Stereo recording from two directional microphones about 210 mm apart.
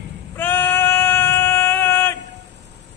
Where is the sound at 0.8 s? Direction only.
10° left (ahead or behind).